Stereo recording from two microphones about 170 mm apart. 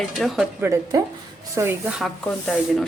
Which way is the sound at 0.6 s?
15° right (ahead or behind).